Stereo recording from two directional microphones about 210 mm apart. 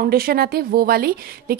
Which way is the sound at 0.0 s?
45° right (ahead or behind).